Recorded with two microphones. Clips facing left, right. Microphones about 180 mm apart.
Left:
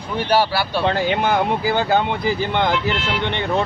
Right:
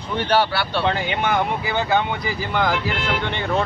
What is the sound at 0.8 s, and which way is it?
Speech, 35° left (ahead or behind).